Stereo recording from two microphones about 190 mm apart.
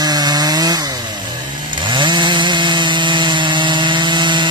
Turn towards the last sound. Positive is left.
turn(degrees=-25)  # may be behind; listen again after turning